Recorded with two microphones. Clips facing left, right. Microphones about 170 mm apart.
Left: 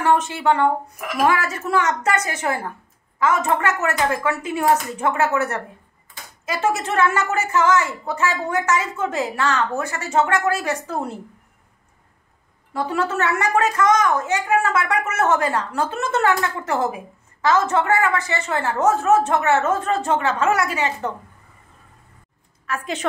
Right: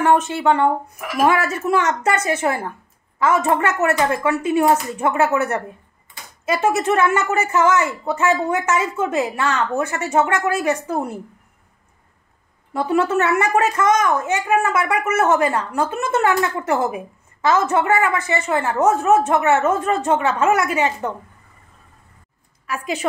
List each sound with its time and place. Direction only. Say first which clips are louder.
0.0 s a woman's voice: right 2 dB; 20° right (ahead or behind)
12.7 s a woman's voice: right 4 dB; 20° right (ahead or behind)
22.7 s a woman's voice: right 2 dB; 10° right (ahead or behind)